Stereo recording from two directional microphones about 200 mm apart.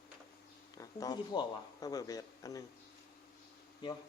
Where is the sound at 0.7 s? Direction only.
20° left (ahead or behind).